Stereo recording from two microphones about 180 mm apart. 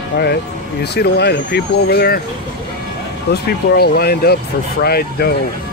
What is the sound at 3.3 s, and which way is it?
Speech, 60° left (ahead or behind).